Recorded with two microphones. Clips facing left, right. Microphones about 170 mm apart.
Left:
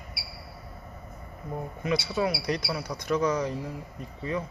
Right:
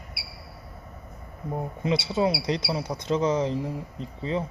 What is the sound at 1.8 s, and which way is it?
Speech, 25° right (ahead or behind).